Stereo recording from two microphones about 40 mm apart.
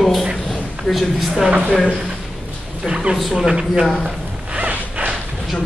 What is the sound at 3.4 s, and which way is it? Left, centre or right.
Speech, centre.